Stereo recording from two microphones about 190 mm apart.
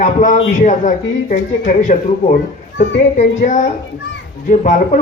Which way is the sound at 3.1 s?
40° left (ahead or behind).